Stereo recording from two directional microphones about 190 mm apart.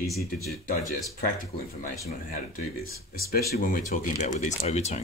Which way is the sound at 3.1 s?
55° left (ahead or behind).